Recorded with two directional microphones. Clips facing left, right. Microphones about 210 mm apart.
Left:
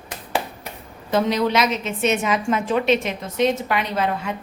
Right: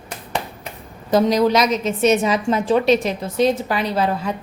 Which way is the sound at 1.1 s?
40° right (ahead or behind).